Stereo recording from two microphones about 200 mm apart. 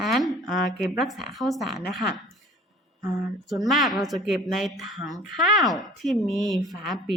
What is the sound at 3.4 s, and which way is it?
Speech, centre (ahead or behind).